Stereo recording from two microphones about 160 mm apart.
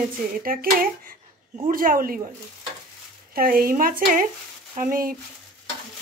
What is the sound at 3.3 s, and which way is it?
Speech, 65° right (ahead or behind).